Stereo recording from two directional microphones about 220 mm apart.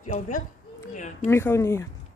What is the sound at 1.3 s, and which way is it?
Speech, 10° left (ahead or behind).